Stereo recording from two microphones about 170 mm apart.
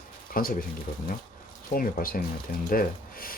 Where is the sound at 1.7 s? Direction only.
60° left (ahead or behind).